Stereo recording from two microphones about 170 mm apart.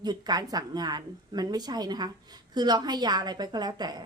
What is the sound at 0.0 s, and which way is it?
A woman's voice, 25° right (ahead or behind).